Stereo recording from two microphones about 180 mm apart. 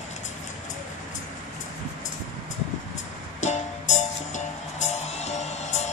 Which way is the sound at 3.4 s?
40° left (ahead or behind).